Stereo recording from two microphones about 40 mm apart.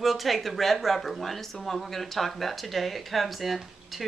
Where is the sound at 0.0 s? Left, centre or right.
Centre.